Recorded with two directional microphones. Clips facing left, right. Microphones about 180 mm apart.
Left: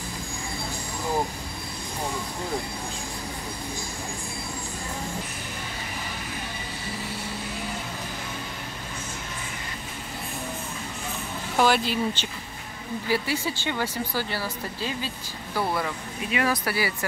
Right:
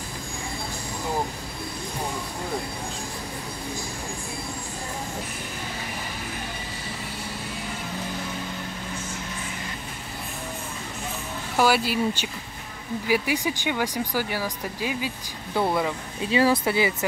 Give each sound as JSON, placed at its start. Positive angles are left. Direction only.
{"t": 11.5, "sound": "speech", "side_deg": -5}